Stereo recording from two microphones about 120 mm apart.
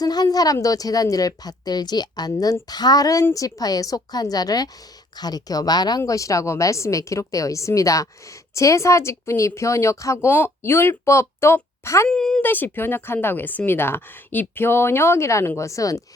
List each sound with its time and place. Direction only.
0.0 s a woman's voice: 35° left (ahead or behind)
12.0 s speech: 5° left (ahead or behind)
12.4 s speech: 15° left (ahead or behind)